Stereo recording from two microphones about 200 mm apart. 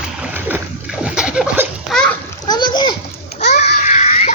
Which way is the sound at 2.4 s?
20° left (ahead or behind).